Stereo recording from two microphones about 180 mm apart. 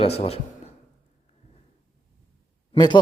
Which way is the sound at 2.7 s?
25° left (ahead or behind).